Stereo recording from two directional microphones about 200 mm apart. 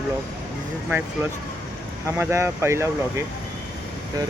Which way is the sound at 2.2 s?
10° right (ahead or behind).